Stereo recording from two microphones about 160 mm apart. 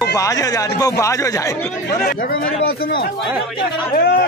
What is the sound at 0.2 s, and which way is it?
Speech, 20° left (ahead or behind).